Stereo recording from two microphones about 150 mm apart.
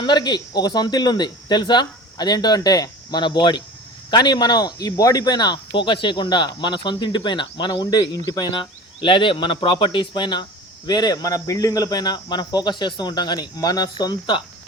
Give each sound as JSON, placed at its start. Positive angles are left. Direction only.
{"t": 0.0, "sound": "speech", "side_deg": 30}